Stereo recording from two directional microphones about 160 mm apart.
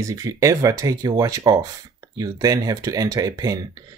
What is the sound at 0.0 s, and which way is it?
Speech, 20° right (ahead or behind).